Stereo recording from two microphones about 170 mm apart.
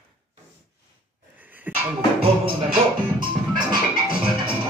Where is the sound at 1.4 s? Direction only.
10° right (ahead or behind).